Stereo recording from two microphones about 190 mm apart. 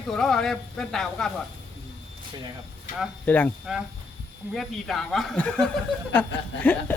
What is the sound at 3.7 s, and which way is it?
Speech, centre (ahead or behind).